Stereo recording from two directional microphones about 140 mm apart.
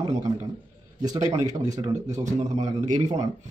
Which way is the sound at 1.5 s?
55° right (ahead or behind).